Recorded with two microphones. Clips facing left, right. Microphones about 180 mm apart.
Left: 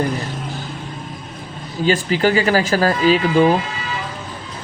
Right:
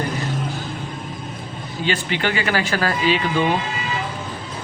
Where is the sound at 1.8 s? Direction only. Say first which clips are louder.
Left 6 dB; 40° left (ahead or behind).